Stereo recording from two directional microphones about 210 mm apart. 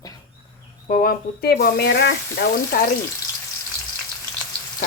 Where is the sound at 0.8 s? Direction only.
40° left (ahead or behind).